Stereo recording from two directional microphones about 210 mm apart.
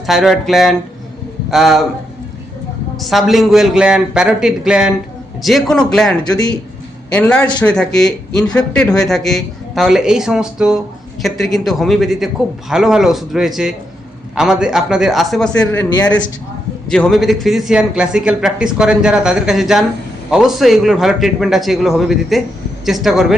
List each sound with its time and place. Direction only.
0.0 s a woman's voice: centre (ahead or behind)
3.0 s a woman's voice: centre (ahead or behind)
15.8 s speech: 20° left (ahead or behind)
16.9 s a woman's voice: centre (ahead or behind)